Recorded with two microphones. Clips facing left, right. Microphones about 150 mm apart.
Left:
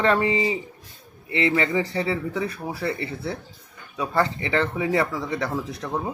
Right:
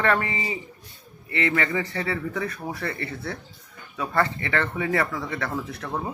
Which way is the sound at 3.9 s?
15° left (ahead or behind).